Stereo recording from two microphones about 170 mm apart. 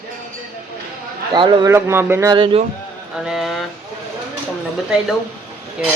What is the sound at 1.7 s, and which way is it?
Speech, 15° right (ahead or behind).